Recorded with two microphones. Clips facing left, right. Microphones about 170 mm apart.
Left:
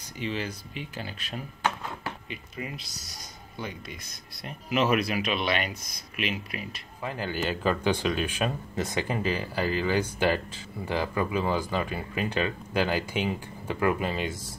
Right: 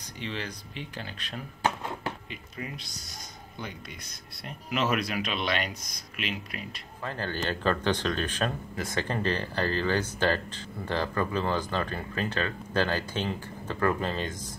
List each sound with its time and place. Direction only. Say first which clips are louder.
0.2 s speech: left 4 dB; 10° left (ahead or behind)
4.5 s speech: left 3 dB; 5° left (ahead or behind); by 9.0 s 20° left (ahead or behind)
9.0 s speech: left 1 dB; 10° left (ahead or behind)